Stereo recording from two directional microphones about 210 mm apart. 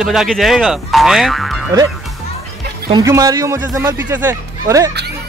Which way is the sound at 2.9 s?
15° right (ahead or behind).